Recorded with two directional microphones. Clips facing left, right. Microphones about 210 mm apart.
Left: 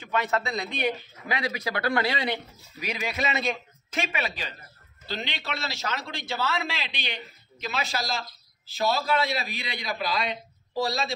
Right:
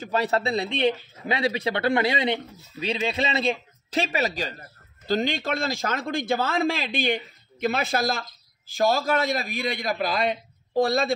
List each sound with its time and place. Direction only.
0.0 s a man's voice: 35° right (ahead or behind); by 11.1 s 55° right (ahead or behind)